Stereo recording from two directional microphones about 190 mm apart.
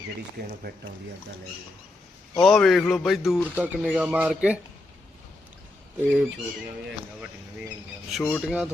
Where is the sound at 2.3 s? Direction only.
Centre (ahead or behind).